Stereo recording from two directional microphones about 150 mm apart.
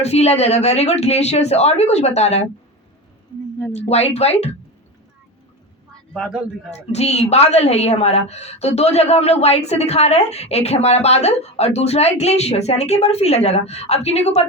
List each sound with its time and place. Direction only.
0.0 s a woman's voice: 45° left (ahead or behind)
3.7 s a woman's voice: 45° left (ahead or behind)
6.1 s speech: centre (ahead or behind)
6.9 s a woman's voice: 45° left (ahead or behind)